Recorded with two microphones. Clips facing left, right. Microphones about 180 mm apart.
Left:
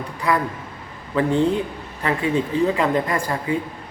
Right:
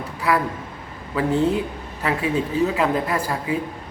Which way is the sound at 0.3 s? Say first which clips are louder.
Even; 5° right (ahead or behind).